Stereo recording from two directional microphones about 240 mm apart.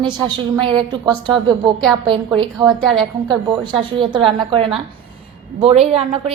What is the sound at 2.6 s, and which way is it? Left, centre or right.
Speech, centre.